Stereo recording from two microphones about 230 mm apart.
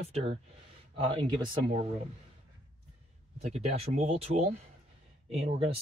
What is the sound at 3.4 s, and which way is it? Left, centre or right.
Speech, right.